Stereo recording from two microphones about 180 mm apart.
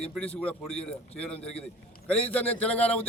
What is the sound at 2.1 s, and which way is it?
Speech, 10° left (ahead or behind).